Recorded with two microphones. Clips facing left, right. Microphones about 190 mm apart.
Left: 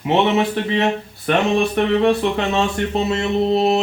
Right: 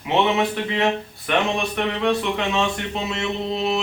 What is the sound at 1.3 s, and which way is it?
Speech, 40° left (ahead or behind).